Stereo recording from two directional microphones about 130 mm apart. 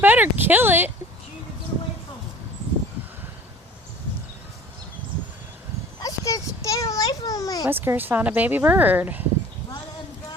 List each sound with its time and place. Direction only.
0.0 s speech: 15° right (ahead or behind)
6.0 s a sound: 25° left (ahead or behind)
7.7 s speech: 15° right (ahead or behind)